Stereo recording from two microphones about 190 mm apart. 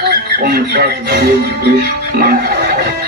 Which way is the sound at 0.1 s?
55° right (ahead or behind).